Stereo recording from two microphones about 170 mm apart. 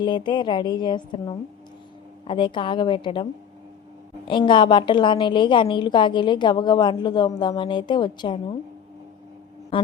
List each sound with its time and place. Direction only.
0.0 s a woman's voice: 25° left (ahead or behind)
4.3 s a woman's voice: 30° left (ahead or behind)